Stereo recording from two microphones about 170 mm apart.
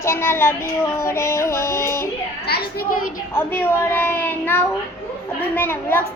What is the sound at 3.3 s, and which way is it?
Child singing, 10° left (ahead or behind).